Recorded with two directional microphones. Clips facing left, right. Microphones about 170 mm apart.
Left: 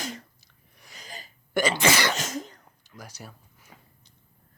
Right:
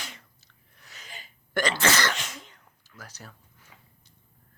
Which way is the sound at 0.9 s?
40° left (ahead or behind).